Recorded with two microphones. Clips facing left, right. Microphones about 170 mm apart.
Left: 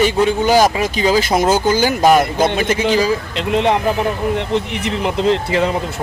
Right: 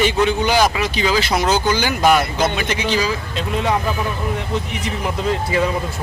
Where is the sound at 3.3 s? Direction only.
70° left (ahead or behind).